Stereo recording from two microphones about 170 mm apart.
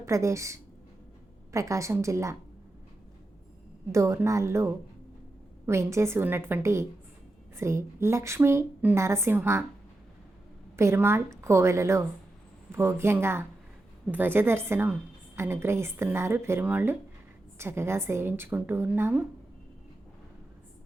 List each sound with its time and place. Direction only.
0.0 s a woman's voice: 15° right (ahead or behind)
3.9 s a woman's voice: 15° right (ahead or behind)
10.8 s a woman's voice: 15° right (ahead or behind)